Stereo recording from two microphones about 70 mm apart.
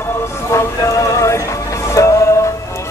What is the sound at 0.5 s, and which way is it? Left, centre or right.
Music, left.